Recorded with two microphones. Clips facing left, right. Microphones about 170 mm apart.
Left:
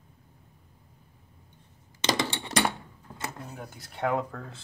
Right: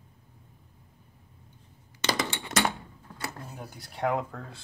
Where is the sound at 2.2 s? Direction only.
35° left (ahead or behind).